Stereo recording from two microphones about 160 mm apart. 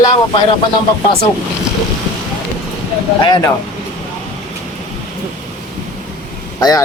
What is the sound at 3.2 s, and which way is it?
Speech, 25° left (ahead or behind).